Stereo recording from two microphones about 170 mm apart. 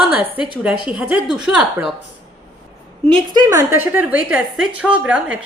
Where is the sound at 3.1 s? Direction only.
25° right (ahead or behind).